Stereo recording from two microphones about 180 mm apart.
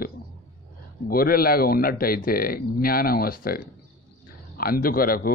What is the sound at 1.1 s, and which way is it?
A man's voice, 55° left (ahead or behind).